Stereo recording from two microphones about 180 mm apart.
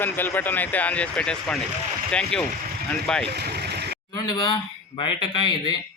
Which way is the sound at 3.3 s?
65° right (ahead or behind).